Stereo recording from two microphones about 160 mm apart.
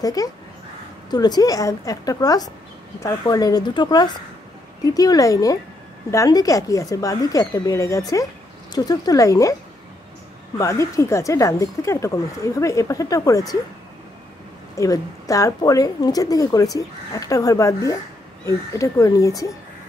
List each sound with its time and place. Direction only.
0.0 s a woman's voice: 25° left (ahead or behind)
10.6 s a woman's voice: 20° left (ahead or behind)
14.8 s a woman's voice: 20° left (ahead or behind)